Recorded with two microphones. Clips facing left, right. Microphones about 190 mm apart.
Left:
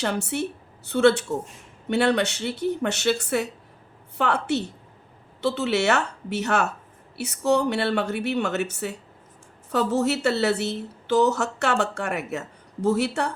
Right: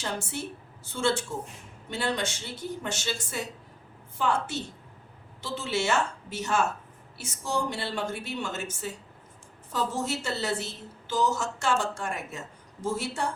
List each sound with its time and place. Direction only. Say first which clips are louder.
0.0 s a woman's voice: left 8 dB; 65° left (ahead or behind)